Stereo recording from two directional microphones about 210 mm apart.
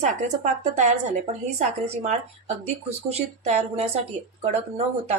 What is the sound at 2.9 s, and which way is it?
Speech, 30° right (ahead or behind).